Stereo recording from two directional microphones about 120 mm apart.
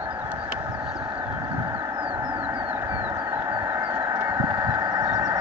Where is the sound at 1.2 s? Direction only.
30° right (ahead or behind).